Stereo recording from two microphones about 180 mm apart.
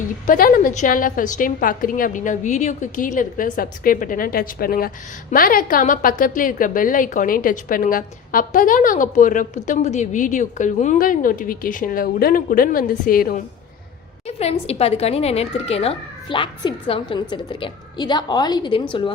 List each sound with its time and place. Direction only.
0.3 s a woman's voice: 50° left (ahead or behind)
14.3 s speech: 35° left (ahead or behind)